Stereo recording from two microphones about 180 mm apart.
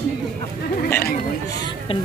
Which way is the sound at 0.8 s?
10° left (ahead or behind).